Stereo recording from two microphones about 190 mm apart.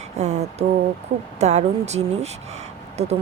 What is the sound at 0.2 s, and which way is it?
Speech, 35° right (ahead or behind).